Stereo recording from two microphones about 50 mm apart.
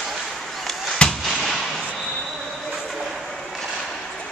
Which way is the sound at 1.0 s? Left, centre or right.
Left.